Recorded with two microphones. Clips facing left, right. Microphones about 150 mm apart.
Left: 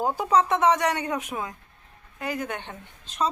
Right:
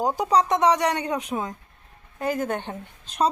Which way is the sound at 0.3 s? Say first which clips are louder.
Even; 35° right (ahead or behind).